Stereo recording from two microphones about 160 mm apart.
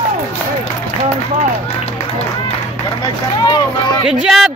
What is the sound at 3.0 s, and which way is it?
Run, 25° left (ahead or behind).